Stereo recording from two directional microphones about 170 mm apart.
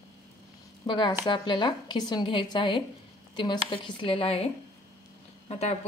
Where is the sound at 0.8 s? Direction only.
25° left (ahead or behind).